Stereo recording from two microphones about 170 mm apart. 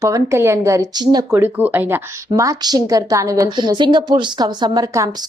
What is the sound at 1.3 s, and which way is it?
A woman's voice, 10° right (ahead or behind).